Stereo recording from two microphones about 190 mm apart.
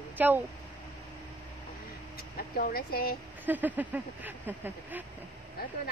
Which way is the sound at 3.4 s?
10° right (ahead or behind).